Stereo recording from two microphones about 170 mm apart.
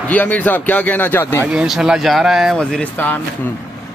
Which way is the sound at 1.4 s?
5° right (ahead or behind).